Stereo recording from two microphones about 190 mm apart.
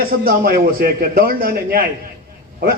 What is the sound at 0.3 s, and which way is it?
A man's voice, 50° right (ahead or behind).